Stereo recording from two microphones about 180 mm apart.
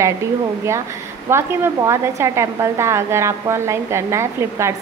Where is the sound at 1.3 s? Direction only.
15° right (ahead or behind).